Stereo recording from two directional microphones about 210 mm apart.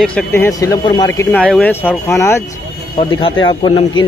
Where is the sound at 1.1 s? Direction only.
10° left (ahead or behind).